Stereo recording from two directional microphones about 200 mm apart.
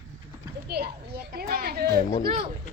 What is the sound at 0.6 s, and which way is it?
A child's voice, 55° right (ahead or behind).